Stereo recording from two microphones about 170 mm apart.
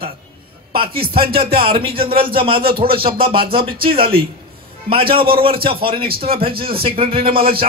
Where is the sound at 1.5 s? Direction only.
30° right (ahead or behind).